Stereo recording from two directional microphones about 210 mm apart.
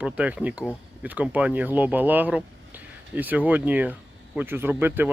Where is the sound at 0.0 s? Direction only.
5° right (ahead or behind).